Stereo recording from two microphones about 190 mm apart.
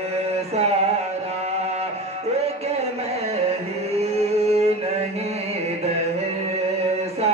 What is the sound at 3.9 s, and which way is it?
Music, 35° right (ahead or behind).